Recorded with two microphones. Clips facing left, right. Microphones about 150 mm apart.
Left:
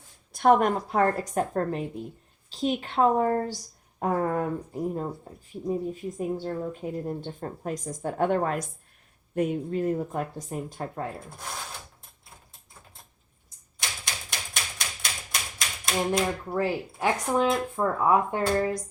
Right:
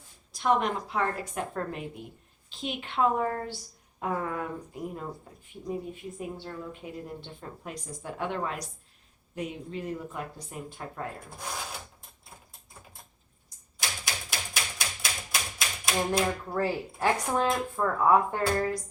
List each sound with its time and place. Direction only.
0.3 s speech: 50° left (ahead or behind)
13.7 s typewriter: 5° right (ahead or behind)
16.5 s speech: 15° left (ahead or behind)